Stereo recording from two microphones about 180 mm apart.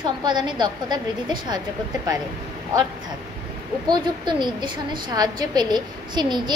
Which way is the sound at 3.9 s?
25° right (ahead or behind).